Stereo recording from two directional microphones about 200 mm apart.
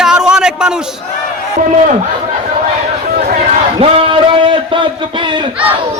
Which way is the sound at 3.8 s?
25° right (ahead or behind).